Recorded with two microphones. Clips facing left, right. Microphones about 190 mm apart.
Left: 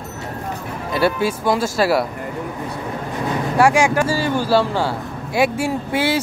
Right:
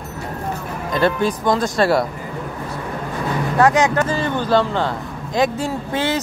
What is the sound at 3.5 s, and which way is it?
Speech, 10° left (ahead or behind).